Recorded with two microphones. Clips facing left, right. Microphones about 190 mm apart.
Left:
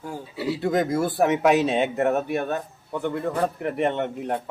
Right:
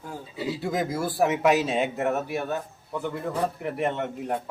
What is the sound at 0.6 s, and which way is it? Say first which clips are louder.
Speech: left 6 dB; centre (ahead or behind).